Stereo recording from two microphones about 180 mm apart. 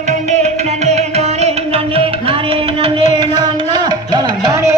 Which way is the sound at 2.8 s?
25° right (ahead or behind).